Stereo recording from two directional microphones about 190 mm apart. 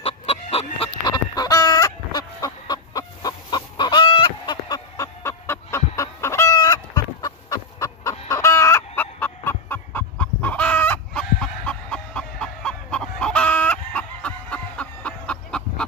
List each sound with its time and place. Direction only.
0.0 s chicken: 30° left (ahead or behind)
1.1 s chicken: 20° left (ahead or behind)